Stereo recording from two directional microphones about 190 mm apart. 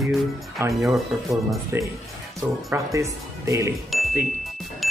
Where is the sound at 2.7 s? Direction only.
15° right (ahead or behind).